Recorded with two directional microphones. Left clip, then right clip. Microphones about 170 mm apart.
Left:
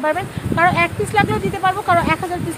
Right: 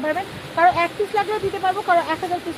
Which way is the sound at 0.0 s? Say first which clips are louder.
Left 4 dB; 10° left (ahead or behind).